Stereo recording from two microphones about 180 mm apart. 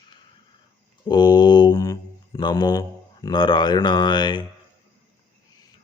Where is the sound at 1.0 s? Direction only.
25° left (ahead or behind).